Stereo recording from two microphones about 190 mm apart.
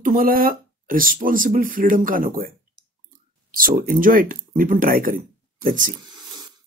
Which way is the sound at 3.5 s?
50° right (ahead or behind).